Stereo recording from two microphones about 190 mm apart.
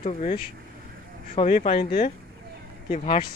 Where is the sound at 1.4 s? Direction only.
25° left (ahead or behind).